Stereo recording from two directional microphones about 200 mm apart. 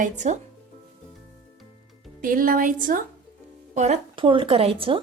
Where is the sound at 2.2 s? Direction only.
45° right (ahead or behind); by 5.0 s 25° right (ahead or behind).